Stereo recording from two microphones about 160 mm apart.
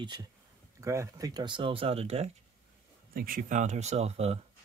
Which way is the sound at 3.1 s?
65° right (ahead or behind).